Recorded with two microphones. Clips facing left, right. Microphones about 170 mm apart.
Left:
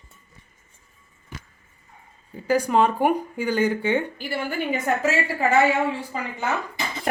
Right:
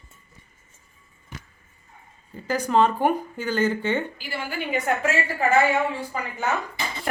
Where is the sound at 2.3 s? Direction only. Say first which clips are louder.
Left 2 dB; 10° left (ahead or behind).